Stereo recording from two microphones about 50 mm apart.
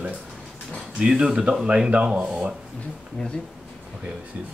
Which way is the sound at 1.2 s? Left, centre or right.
Centre.